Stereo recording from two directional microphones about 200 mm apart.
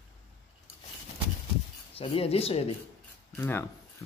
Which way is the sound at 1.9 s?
30° left (ahead or behind).